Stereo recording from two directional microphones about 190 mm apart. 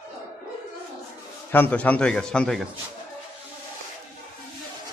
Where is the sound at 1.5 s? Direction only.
10° left (ahead or behind).